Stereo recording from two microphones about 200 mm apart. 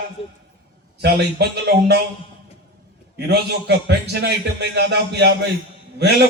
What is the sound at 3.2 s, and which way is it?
A man's voice, 55° right (ahead or behind).